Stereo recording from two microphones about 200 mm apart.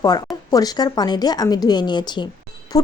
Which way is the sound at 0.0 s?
20° left (ahead or behind).